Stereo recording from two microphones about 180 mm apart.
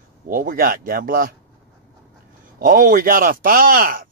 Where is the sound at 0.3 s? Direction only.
50° right (ahead or behind).